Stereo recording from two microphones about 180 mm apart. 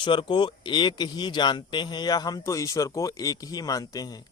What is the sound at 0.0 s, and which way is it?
Speech, 25° left (ahead or behind).